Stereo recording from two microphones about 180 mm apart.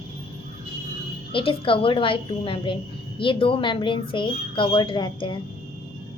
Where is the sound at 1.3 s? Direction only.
30° left (ahead or behind).